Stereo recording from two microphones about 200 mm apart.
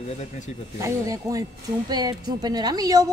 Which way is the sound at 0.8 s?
15° right (ahead or behind).